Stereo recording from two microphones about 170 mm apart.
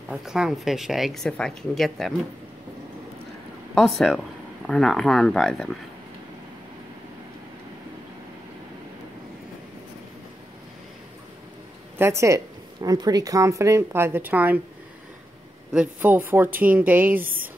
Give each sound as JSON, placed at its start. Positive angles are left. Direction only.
{"t": 0.1, "sound": "speech", "side_deg": -5}
{"t": 4.6, "sound": "speech", "side_deg": 5}
{"t": 12.0, "sound": "speech", "side_deg": -15}
{"t": 15.7, "sound": "speech", "side_deg": -5}